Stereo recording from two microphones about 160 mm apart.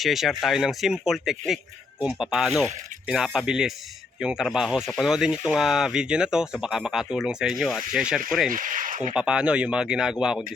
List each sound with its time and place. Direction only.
0.0 s speech: centre (ahead or behind)
8.4 s speech: 55° right (ahead or behind)
9.1 s speech: 5° right (ahead or behind)